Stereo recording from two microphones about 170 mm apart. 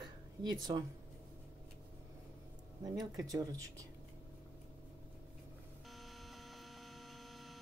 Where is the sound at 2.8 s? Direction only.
20° right (ahead or behind).